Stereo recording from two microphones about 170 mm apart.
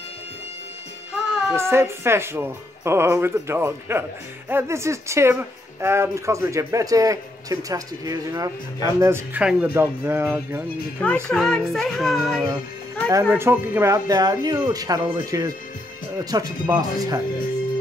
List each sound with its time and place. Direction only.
1.1 s music: 5° right (ahead or behind)
1.6 s a man's voice: 15° right (ahead or behind)
11.2 s music: 5° left (ahead or behind)
13.3 s a man's voice: 15° right (ahead or behind)